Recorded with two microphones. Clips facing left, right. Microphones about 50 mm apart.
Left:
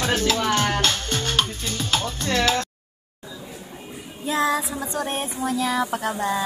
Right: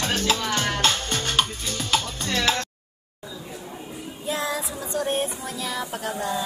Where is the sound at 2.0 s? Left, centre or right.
Left.